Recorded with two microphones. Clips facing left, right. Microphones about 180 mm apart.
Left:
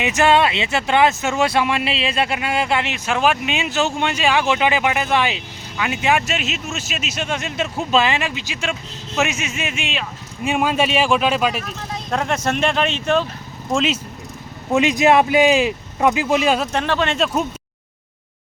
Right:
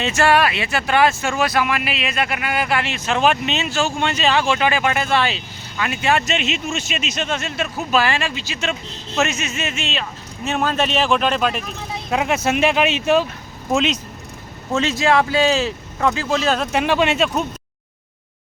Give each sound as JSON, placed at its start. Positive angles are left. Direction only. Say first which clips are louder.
{"t": 0.0, "sound": "speech", "louder": "left 1 dB", "side_deg": 20}
{"t": 12.1, "sound": "speech", "louder": "right 2 dB", "side_deg": -5}
{"t": 13.7, "sound": "speech", "louder": "even", "side_deg": 5}
{"t": 14.7, "sound": "speech", "louder": "left 3 dB", "side_deg": 15}
{"t": 16.7, "sound": "speech", "louder": "right 2 dB", "side_deg": -10}